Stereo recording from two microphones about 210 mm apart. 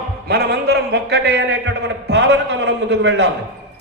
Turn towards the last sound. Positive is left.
turn(degrees=-55)  # may be behind; listen again after turning